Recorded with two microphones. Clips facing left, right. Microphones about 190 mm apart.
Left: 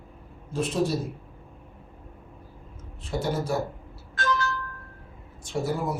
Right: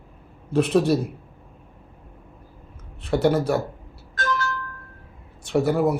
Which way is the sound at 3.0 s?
65° right (ahead or behind).